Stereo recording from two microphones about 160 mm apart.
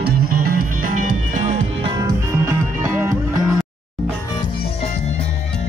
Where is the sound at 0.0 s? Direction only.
60° right (ahead or behind).